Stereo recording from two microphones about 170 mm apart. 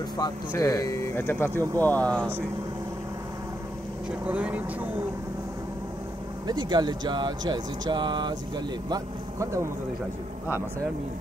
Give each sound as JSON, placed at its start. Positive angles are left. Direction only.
{"t": 0.2, "sound": "speech", "side_deg": 15}
{"t": 1.5, "sound": "speech", "side_deg": -20}
{"t": 1.8, "sound": "speech", "side_deg": 10}
{"t": 4.3, "sound": "speech", "side_deg": -10}
{"t": 6.4, "sound": "speech", "side_deg": -25}